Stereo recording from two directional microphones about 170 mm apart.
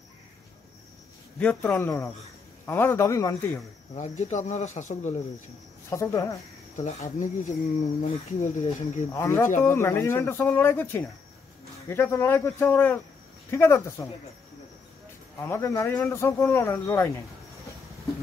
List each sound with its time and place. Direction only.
1.4 s speech: 10° left (ahead or behind)
3.9 s speech: 45° left (ahead or behind)
5.9 s speech: 20° left (ahead or behind)
6.8 s speech: 45° left (ahead or behind)
9.1 s speech: 15° left (ahead or behind)
15.3 s speech: 15° left (ahead or behind)